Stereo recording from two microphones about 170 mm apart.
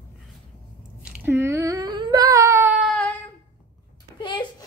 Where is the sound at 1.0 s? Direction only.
10° right (ahead or behind).